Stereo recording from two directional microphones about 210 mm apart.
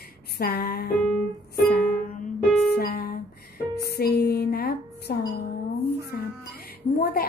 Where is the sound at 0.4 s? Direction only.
50° left (ahead or behind).